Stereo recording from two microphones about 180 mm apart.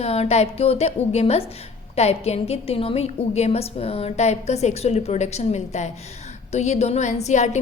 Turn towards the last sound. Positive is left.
turn(degrees=40)  # may be behind; listen again after turning